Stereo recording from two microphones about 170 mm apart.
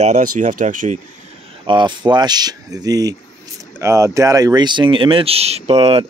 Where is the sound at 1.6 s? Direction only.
25° right (ahead or behind).